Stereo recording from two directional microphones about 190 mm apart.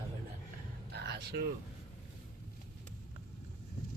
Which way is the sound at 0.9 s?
60° right (ahead or behind).